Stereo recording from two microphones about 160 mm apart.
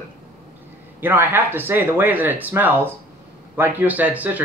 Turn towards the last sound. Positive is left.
turn(degrees=-10)  # may be behind; listen again after turning